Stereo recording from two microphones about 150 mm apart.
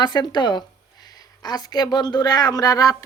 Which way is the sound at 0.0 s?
30° left (ahead or behind).